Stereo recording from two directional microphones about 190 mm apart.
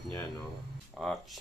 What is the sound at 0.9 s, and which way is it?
Speech, centre (ahead or behind).